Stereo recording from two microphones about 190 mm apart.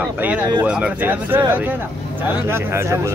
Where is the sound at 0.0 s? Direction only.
10° right (ahead or behind).